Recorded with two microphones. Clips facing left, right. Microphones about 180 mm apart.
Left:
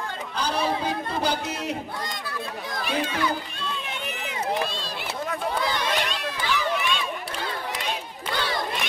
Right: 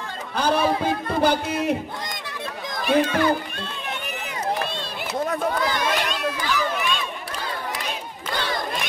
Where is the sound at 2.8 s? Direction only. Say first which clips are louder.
Right 7 dB; 50° right (ahead or behind).